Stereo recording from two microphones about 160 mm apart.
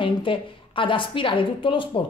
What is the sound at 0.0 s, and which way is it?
Speech, 30° left (ahead or behind).